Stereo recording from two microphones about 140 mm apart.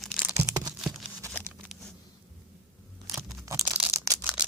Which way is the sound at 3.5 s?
20° right (ahead or behind).